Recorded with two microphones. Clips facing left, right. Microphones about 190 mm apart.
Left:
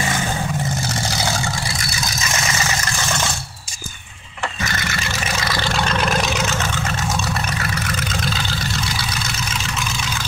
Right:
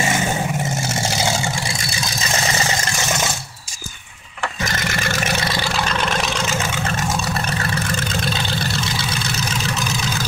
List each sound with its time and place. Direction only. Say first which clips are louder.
0.0 s vehicle: right 2 dB; 25° right (ahead or behind)
4.6 s vehicle: right 2 dB; 50° right (ahead or behind)
5.6 s vehicle: left 1 dB; centre (ahead or behind)
8.3 s vehicle: right 2 dB; 20° right (ahead or behind)
9.8 s vehicle: right 3 dB; 40° right (ahead or behind)